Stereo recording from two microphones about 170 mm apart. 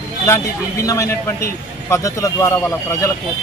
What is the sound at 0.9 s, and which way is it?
Speech, 20° left (ahead or behind).